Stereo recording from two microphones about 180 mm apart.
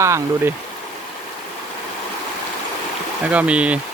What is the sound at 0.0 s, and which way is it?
Speech, 15° right (ahead or behind).